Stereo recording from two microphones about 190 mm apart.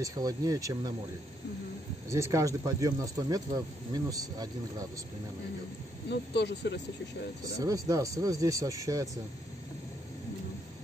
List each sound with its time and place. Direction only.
0.0 s speech: 20° right (ahead or behind)
2.0 s speech: 15° right (ahead or behind)
6.0 s speech: 60° left (ahead or behind)
7.6 s speech: 15° right (ahead or behind)